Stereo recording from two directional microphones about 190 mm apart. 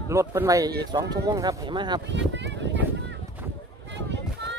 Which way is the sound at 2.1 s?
70° right (ahead or behind).